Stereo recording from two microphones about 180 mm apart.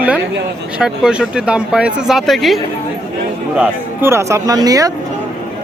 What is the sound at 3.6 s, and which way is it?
Speech, 15° right (ahead or behind).